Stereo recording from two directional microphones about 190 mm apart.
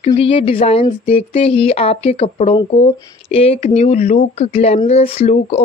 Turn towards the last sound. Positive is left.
turn(degrees=35)  # may be behind; listen again after turning